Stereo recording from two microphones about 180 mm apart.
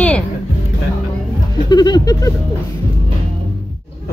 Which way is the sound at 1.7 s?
20° left (ahead or behind).